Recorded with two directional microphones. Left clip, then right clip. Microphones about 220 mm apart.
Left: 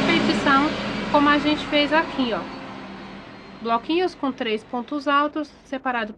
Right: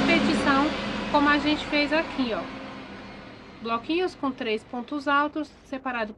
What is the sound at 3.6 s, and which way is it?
Speech, 15° left (ahead or behind).